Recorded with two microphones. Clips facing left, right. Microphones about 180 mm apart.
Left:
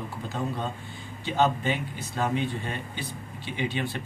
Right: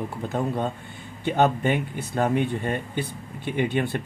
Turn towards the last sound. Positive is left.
turn(degrees=-55)  # may be behind; listen again after turning